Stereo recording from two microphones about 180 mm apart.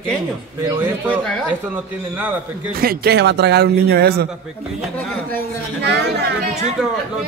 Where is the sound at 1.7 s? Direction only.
10° right (ahead or behind).